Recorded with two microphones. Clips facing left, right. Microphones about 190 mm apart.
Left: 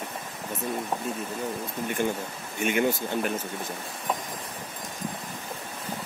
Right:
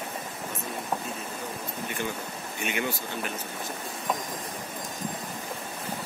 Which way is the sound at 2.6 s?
45° left (ahead or behind).